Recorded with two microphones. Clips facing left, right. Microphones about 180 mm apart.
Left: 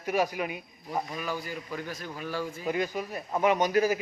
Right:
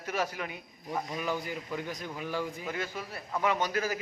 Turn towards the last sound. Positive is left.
turn(degrees=15)  # may be behind; listen again after turning